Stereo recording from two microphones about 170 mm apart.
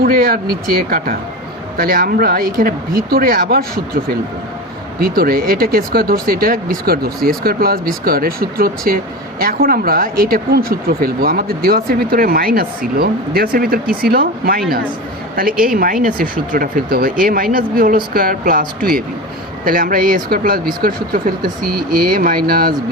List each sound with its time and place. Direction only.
0.0 s speech: 60° right (ahead or behind)
4.9 s speech: 60° right (ahead or behind)
15.6 s speech: 55° right (ahead or behind)